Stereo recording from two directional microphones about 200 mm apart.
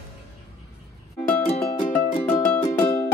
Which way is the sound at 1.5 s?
40° left (ahead or behind).